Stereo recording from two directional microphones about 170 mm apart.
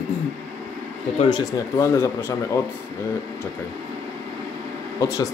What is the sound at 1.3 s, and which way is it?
Speech, 15° left (ahead or behind).